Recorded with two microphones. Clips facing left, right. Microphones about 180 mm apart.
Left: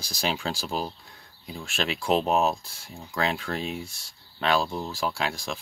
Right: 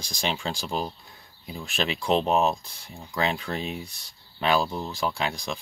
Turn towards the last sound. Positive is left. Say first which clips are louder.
# right 1 dB
turn(degrees=0)  # may be behind; listen again after turning